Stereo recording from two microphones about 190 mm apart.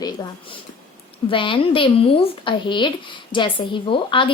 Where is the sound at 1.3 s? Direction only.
25° left (ahead or behind).